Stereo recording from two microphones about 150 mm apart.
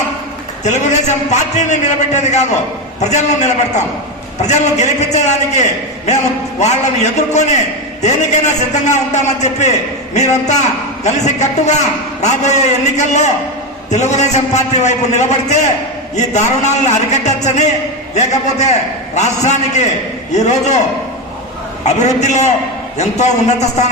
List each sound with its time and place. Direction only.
0.6 s a man's voice: 50° left (ahead or behind)
21.8 s a man's voice: 50° left (ahead or behind)